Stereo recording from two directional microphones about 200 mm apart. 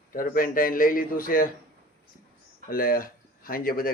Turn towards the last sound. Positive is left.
turn(degrees=45)  # may be behind; listen again after turning